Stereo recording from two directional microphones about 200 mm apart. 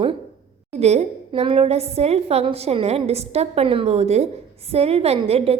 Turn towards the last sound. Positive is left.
turn(degrees=-30)  # may be behind; listen again after turning